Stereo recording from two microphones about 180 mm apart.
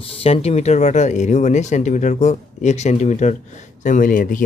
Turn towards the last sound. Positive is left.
turn(degrees=50)  # may be behind; listen again after turning